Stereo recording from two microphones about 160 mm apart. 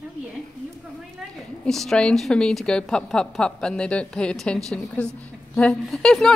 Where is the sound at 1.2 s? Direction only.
Centre (ahead or behind).